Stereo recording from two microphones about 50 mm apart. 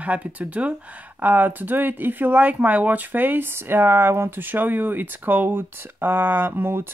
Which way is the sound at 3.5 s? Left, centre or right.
Right.